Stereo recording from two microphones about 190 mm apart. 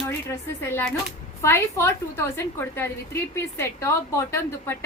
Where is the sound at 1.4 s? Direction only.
15° left (ahead or behind).